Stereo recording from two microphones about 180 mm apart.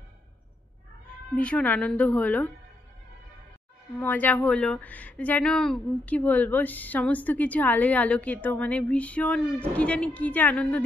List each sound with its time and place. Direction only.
1.3 s speech: 5° left (ahead or behind)
4.0 s speech: 10° left (ahead or behind)